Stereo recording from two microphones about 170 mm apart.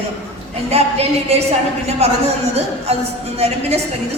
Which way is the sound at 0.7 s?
35° right (ahead or behind).